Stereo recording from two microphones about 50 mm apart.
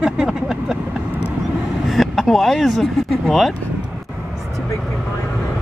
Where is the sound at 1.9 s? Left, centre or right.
Centre.